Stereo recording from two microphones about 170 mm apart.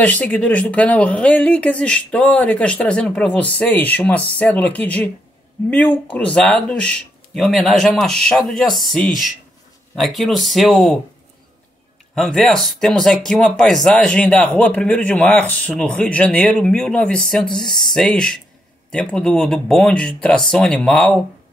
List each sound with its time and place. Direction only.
0.0 s speech: 10° left (ahead or behind)
12.2 s speech: centre (ahead or behind)